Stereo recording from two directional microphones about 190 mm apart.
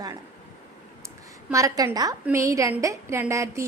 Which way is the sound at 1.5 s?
15° right (ahead or behind).